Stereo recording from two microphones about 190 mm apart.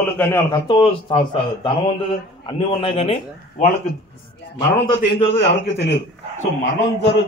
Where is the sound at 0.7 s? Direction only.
25° left (ahead or behind).